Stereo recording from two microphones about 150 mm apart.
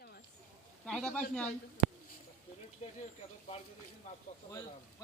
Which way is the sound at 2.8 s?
45° left (ahead or behind).